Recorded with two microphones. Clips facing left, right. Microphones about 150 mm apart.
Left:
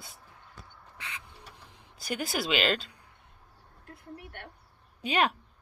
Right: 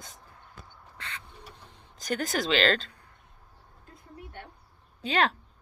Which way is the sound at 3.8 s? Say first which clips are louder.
Left 2 dB; 65° left (ahead or behind).